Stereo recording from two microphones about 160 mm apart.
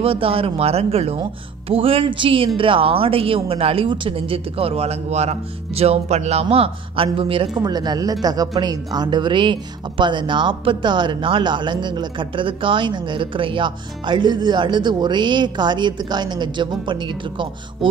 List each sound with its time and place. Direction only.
0.0 s a woman's voice: 35° right (ahead or behind)